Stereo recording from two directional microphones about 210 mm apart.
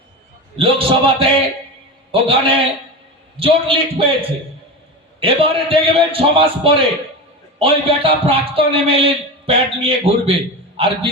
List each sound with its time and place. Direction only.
0.5 s a man's voice: 25° right (ahead or behind)